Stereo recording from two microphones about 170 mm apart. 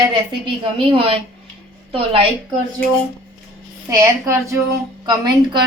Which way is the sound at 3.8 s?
20° right (ahead or behind).